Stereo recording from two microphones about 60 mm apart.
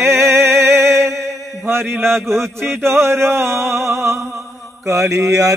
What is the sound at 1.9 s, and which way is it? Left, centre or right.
Speech, right.